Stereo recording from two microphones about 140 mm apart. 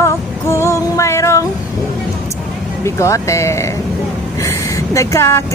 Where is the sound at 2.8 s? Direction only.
20° left (ahead or behind).